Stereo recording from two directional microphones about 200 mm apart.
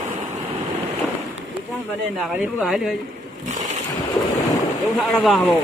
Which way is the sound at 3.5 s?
35° right (ahead or behind).